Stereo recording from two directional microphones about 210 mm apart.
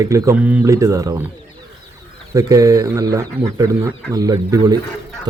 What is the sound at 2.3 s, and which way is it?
Speech, 15° right (ahead or behind).